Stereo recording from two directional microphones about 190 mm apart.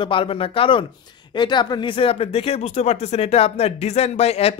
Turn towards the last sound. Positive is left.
turn(degrees=35)  # may be behind; listen again after turning